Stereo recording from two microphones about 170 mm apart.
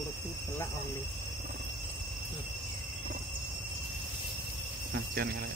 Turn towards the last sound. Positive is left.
turn(degrees=-65)  # may be behind; listen again after turning